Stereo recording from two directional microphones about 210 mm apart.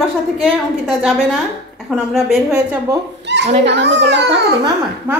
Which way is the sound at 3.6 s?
55° right (ahead or behind).